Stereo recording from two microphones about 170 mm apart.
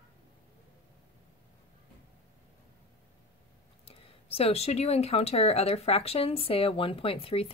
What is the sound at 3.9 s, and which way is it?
Speech, 35° left (ahead or behind).